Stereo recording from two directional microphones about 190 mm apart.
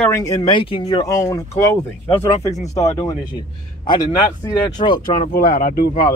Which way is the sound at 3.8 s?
20° left (ahead or behind).